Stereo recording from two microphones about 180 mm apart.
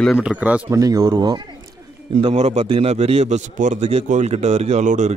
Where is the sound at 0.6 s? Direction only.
20° right (ahead or behind).